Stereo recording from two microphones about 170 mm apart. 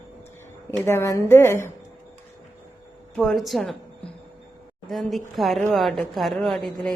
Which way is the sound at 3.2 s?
Centre (ahead or behind).